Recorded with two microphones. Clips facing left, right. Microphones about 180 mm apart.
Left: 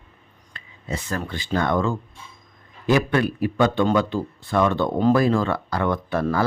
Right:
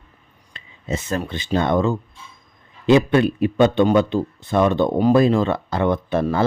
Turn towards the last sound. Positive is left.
turn(degrees=-20)  # may be behind; listen again after turning